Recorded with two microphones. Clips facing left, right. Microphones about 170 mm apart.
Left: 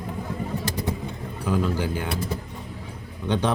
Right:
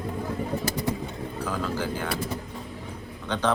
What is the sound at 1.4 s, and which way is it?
Speech, 15° left (ahead or behind).